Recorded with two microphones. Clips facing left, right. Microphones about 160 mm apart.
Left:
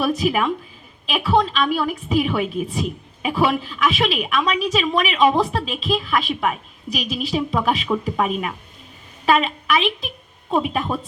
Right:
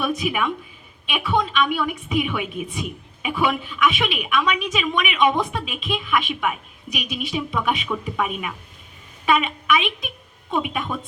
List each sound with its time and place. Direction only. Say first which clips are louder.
0.0 s a woman's voice: left 4 dB; 35° left (ahead or behind)